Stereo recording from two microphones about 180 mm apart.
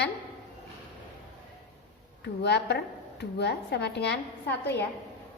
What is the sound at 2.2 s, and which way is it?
A woman's voice, 70° left (ahead or behind).